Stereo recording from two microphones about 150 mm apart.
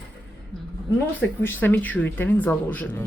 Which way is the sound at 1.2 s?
10° left (ahead or behind).